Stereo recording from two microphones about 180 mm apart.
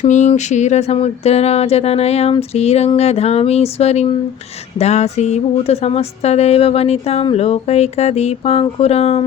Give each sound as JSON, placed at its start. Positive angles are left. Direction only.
{"t": 0.0, "sound": "speech", "side_deg": 40}